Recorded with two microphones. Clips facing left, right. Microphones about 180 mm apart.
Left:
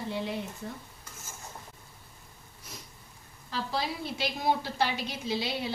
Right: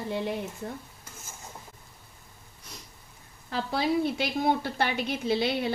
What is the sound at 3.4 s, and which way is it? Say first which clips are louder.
A woman's voice: right 5 dB; 55° right (ahead or behind).